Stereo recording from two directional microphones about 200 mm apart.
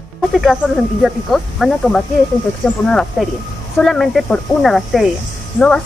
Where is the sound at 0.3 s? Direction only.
Centre (ahead or behind).